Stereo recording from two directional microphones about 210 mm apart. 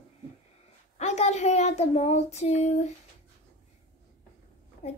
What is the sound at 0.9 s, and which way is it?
Child singing, 30° left (ahead or behind).